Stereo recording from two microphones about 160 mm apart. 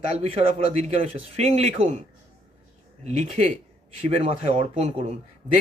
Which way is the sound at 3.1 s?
45° right (ahead or behind).